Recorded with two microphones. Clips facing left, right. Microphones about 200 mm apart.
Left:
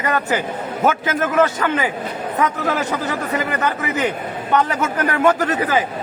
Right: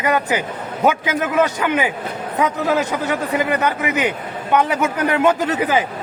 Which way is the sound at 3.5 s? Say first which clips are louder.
Right 2 dB; 15° right (ahead or behind).